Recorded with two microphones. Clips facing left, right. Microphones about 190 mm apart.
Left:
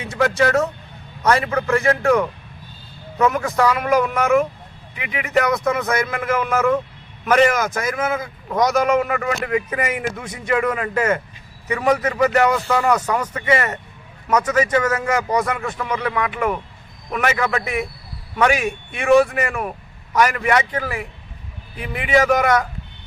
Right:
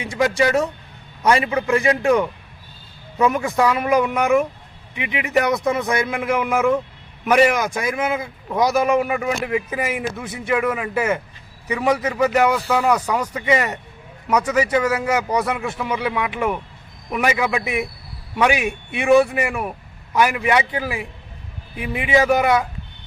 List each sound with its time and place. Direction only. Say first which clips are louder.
0.0 s a man's voice: even; 15° right (ahead or behind)